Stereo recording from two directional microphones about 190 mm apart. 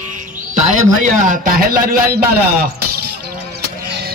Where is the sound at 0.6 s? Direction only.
40° right (ahead or behind).